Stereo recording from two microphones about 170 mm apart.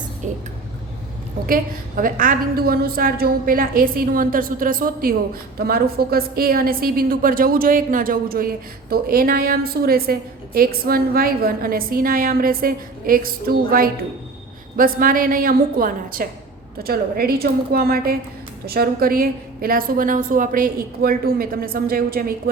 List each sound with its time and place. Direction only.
1.5 s a woman's voice: 55° right (ahead or behind)